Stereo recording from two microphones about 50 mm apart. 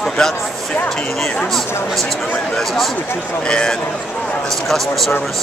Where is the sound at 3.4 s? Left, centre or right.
Centre.